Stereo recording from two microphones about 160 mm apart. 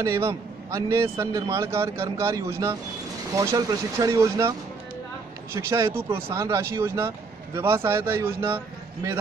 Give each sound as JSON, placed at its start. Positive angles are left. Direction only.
{"t": 0.0, "sound": "a man's voice", "side_deg": -20}